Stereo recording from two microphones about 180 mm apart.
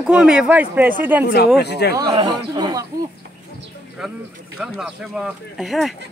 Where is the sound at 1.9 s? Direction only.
25° right (ahead or behind).